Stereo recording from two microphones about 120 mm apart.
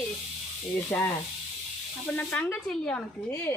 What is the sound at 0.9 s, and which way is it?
Speech, 10° left (ahead or behind).